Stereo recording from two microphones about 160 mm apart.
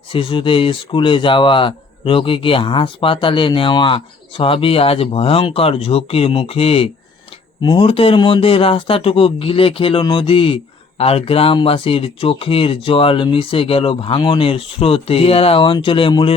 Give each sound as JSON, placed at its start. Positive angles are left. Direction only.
{"t": 0.1, "sound": "speech", "side_deg": 35}